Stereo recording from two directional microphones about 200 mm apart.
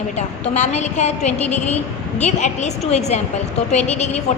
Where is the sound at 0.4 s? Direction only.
35° left (ahead or behind).